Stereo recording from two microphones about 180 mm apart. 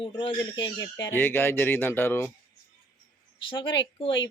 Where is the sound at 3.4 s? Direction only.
25° left (ahead or behind).